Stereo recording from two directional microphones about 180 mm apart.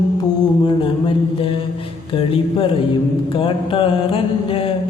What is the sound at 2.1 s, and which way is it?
Speech, 30° left (ahead or behind).